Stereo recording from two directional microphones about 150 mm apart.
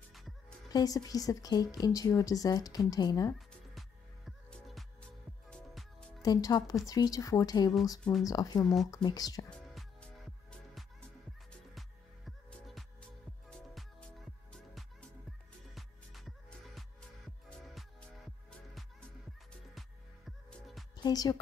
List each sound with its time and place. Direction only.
0.7 s a woman's voice: 25° left (ahead or behind)
3.3 s music: centre (ahead or behind)
6.2 s a woman's voice: 25° left (ahead or behind)
8.0 s speech: centre (ahead or behind)
8.3 s a woman's voice: 25° left (ahead or behind)
9.5 s music: centre (ahead or behind)
12.3 s music: centre (ahead or behind)
20.2 s music: centre (ahead or behind)
20.9 s music: 25° left (ahead or behind)